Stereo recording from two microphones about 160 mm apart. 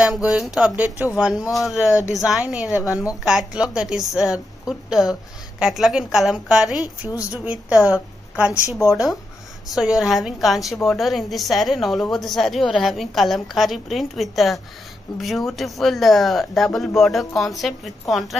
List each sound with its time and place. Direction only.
0.0 s a woman's voice: 5° right (ahead or behind)
1.9 s a woman's voice: 20° left (ahead or behind)
2.1 s a woman's voice: 5° right (ahead or behind)
2.7 s a woman's voice: 20° left (ahead or behind)
3.3 s a woman's voice: centre (ahead or behind)
7.1 s a woman's voice: 20° left (ahead or behind)
7.9 s a woman's voice: 10° right (ahead or behind)
8.8 s a woman's voice: 25° left (ahead or behind)
9.8 s a woman's voice: 5° right (ahead or behind)